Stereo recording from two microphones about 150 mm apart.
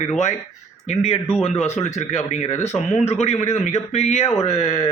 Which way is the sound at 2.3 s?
50° left (ahead or behind).